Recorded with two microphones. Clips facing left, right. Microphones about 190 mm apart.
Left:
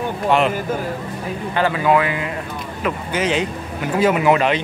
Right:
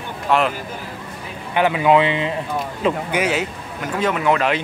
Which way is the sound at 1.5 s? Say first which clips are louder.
Right 2 dB; 15° right (ahead or behind).